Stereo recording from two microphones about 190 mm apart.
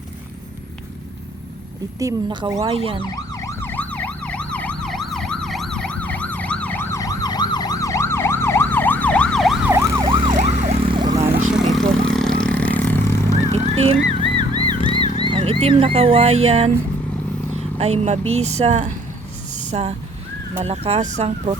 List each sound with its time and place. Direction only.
2.0 s speech: 20° right (ahead or behind)
2.7 s ambulance: 30° right (ahead or behind)
3.0 s emergency vehicle: 20° left (ahead or behind); by 9.6 s centre (ahead or behind)
9.6 s emergency vehicle: 15° right (ahead or behind)
10.3 s emergency vehicle: 35° right (ahead or behind)
11.5 s vehicle: centre (ahead or behind)
13.5 s wild animals: 35° right (ahead or behind)
14.8 s wild animals: 30° left (ahead or behind)
15.3 s a sound: 30° right (ahead or behind)
15.6 s speech: 30° right (ahead or behind)
17.7 s speech: 35° right (ahead or behind)